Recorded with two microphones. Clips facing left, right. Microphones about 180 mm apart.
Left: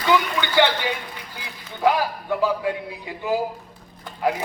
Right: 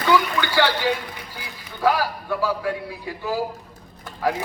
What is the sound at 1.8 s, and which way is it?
A man's voice, 20° left (ahead or behind).